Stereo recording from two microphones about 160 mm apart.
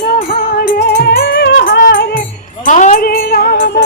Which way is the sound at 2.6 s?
50° left (ahead or behind).